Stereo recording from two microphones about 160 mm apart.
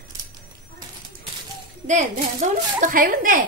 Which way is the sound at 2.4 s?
50° right (ahead or behind).